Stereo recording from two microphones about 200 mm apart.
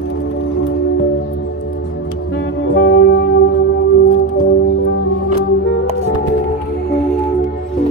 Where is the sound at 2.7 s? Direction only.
60° left (ahead or behind).